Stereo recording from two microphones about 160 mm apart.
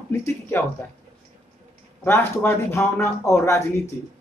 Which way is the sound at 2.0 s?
15° left (ahead or behind).